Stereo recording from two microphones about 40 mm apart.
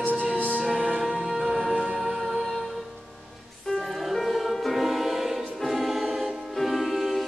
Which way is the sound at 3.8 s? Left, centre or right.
Centre.